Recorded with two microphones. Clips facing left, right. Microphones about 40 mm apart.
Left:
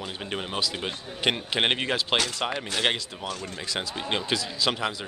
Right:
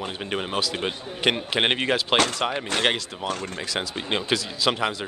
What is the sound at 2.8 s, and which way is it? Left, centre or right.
Speech, centre.